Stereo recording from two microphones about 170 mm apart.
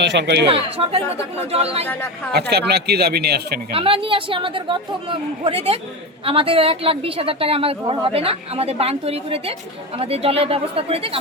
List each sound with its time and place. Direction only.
0.0 s speech: 85° right
0.4 s a woman's voice: 35° right (ahead or behind)
1.9 s speech: 10° left (ahead or behind)
2.3 s speech: 70° right (ahead or behind)
3.8 s a woman's voice: 30° right (ahead or behind)